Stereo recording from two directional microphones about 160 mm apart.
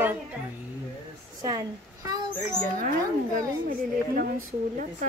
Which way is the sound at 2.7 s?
60° right (ahead or behind).